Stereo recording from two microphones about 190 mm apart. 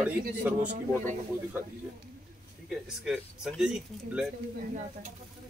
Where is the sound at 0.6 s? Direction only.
40° right (ahead or behind).